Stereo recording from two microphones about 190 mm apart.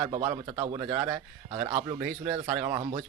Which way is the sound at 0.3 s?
30° right (ahead or behind).